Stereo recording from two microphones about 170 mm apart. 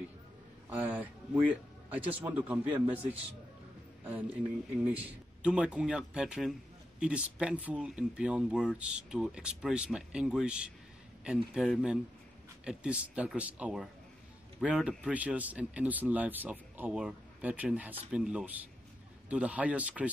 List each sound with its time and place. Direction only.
0.7 s a man's voice: 10° right (ahead or behind)
4.8 s speech: 10° right (ahead or behind)